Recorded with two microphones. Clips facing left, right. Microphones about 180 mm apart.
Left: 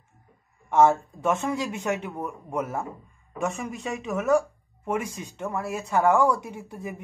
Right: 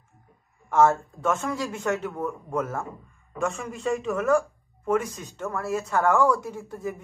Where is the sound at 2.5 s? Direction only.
20° left (ahead or behind).